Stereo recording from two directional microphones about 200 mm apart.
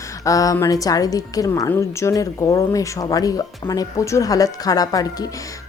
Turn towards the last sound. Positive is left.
turn(degrees=20)  # may be behind; listen again after turning